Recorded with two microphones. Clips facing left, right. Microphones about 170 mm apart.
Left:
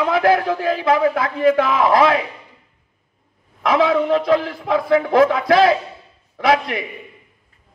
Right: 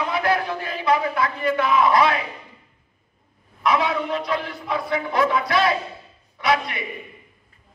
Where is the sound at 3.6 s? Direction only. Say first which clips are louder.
Left 5 dB; 90° left.